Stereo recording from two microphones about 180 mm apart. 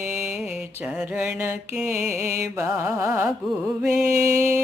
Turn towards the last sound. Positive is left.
turn(degrees=-15)  # may be behind; listen again after turning